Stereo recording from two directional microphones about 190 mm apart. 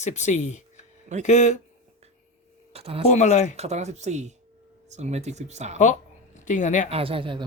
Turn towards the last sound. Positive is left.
turn(degrees=-25)  # may be behind; listen again after turning